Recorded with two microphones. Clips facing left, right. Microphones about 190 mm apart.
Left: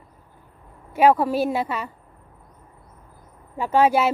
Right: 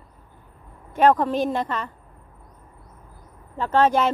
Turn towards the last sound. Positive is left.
turn(degrees=10)  # may be behind; listen again after turning